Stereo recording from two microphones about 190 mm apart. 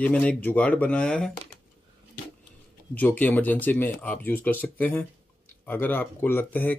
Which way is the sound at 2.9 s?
10° left (ahead or behind).